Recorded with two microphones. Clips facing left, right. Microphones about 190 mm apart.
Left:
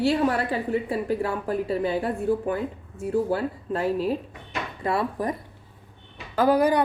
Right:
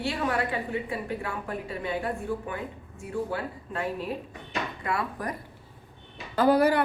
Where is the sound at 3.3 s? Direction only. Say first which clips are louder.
Left 7 dB; 35° left (ahead or behind).